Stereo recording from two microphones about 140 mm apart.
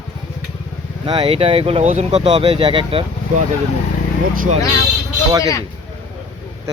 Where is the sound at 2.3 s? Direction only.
35° right (ahead or behind).